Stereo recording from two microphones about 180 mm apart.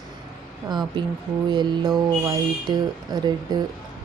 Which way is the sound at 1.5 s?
25° right (ahead or behind).